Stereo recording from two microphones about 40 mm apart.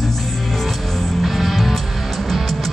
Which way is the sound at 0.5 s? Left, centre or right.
Centre.